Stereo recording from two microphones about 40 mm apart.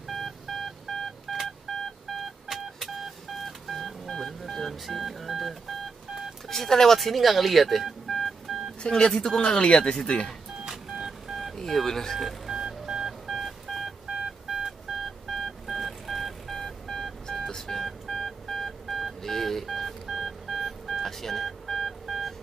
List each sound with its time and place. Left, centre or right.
0.1 s telephone dialing: centre
6.5 s speech: centre
8.8 s speech: centre
10.6 s a sound: centre
11.5 s speech: centre
12.4 s telephone dialing: centre
14.9 s telephone dialing: centre